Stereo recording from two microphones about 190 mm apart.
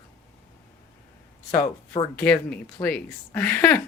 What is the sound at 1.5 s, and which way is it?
Speech, 15° left (ahead or behind).